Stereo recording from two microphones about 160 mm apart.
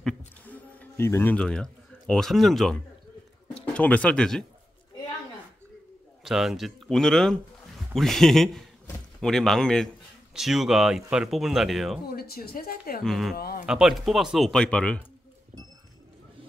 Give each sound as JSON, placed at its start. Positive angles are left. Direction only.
{"t": 0.5, "sound": "speech", "side_deg": 10}
{"t": 6.2, "sound": "a man's voice", "side_deg": 0}
{"t": 12.1, "sound": "a woman's voice", "side_deg": 70}
{"t": 13.0, "sound": "speech", "side_deg": 0}
{"t": 13.4, "sound": "a woman's voice", "side_deg": 70}
{"t": 13.7, "sound": "speech", "side_deg": -5}